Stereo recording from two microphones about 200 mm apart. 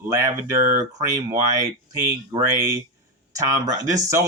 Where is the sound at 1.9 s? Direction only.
15° right (ahead or behind).